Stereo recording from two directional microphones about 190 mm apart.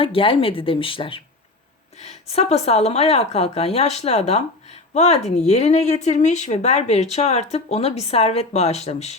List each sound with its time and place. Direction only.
0.0 s a woman's voice: 30° left (ahead or behind)